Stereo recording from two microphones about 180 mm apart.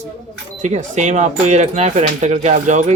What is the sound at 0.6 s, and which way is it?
Speech, 40° right (ahead or behind).